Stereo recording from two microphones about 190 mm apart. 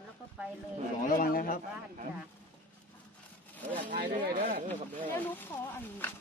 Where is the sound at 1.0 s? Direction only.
50° left (ahead or behind).